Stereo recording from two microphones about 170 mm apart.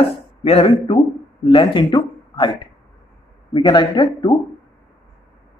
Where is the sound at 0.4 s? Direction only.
35° left (ahead or behind).